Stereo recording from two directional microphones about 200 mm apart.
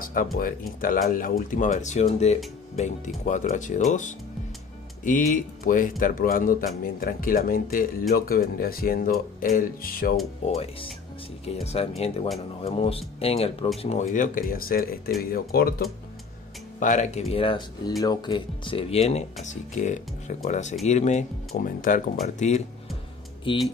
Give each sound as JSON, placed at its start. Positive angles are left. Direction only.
{"t": 0.0, "sound": "speech", "side_deg": 45}
{"t": 10.4, "sound": "speech", "side_deg": 30}
{"t": 16.8, "sound": "speech", "side_deg": 40}
{"t": 23.5, "sound": "speech", "side_deg": 25}